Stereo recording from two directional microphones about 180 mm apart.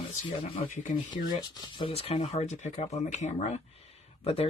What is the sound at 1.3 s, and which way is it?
Speech, 25° left (ahead or behind).